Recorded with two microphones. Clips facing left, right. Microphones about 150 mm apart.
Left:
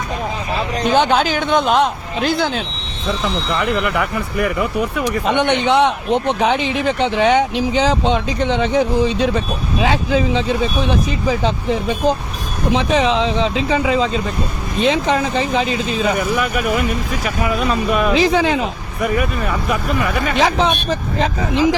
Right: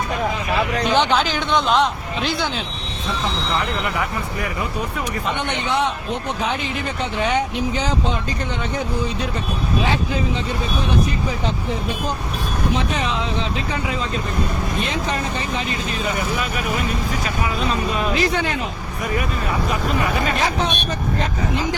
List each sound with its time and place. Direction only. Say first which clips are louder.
0.5 s speech: even; 25° left (ahead or behind)
0.9 s a man's voice: left 4 dB; 50° left (ahead or behind)
4.9 s speech: left 9 dB; 80° left
12.7 s speech: left 10 dB; 90° left
17.9 s speech: left 9 dB; 75° left (ahead or behind)
20.3 s speech: left 5 dB; 90° left